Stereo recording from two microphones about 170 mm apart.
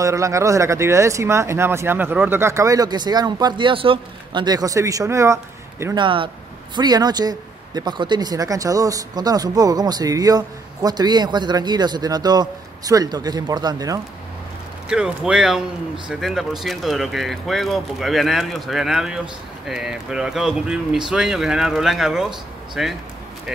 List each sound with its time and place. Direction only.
0.0 s speech: 20° right (ahead or behind)
5.9 s speech: 30° right (ahead or behind)
14.9 s speech: 5° right (ahead or behind)